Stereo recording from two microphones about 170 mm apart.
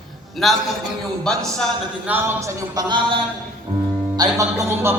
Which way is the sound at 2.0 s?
10° right (ahead or behind).